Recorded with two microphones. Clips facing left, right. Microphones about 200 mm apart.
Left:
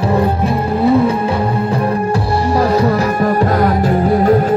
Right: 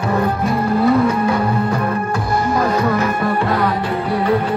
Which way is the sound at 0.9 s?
30° left (ahead or behind).